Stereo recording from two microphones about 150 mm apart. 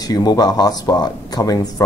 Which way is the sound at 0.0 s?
25° left (ahead or behind).